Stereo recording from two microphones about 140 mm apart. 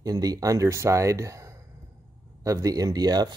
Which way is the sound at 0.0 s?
30° right (ahead or behind).